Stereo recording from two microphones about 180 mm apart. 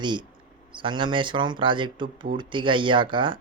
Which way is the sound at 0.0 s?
25° right (ahead or behind).